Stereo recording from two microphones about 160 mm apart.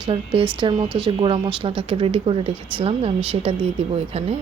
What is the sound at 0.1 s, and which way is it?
Speech, 30° right (ahead or behind).